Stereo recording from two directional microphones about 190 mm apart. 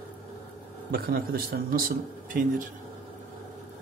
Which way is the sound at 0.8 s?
55° right (ahead or behind).